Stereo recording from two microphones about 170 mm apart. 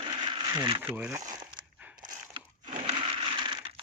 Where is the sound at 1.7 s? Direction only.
10° right (ahead or behind).